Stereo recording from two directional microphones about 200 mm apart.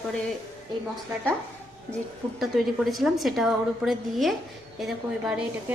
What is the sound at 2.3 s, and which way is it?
A woman's voice, centre (ahead or behind).